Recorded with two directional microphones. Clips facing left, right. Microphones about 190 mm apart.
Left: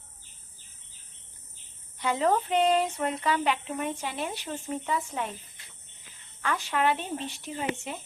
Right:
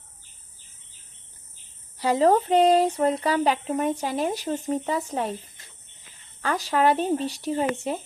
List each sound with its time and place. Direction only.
2.0 s speech: 35° right (ahead or behind)